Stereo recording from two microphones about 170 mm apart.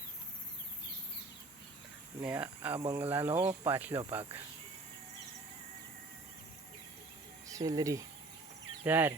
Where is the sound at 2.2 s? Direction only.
10° right (ahead or behind).